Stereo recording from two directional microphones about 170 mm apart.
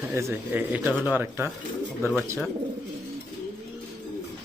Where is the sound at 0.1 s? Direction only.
15° right (ahead or behind).